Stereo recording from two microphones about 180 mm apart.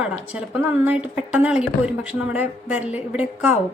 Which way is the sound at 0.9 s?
5° right (ahead or behind).